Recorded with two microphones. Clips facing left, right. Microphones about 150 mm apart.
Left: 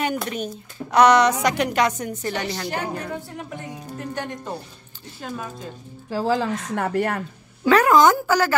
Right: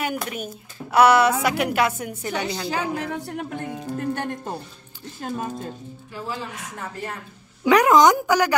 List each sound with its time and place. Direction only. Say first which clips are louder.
0.0 s a woman's voice: left 3 dB; 5° right (ahead or behind)
2.9 s speech: right 2 dB; 70° right (ahead or behind); by 5.7 s 45° right (ahead or behind)
6.0 s speech: left 10 dB; 90° left
6.7 s a woman's voice: left 12 dB; 65° left (ahead or behind)
7.6 s a woman's voice: even; 15° right (ahead or behind)